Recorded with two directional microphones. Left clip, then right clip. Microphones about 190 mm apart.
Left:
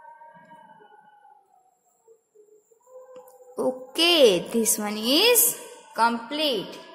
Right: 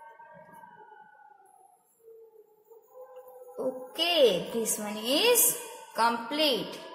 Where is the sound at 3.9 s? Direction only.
45° left (ahead or behind).